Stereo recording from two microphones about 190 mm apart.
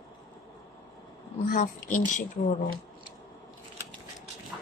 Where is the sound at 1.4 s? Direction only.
40° left (ahead or behind).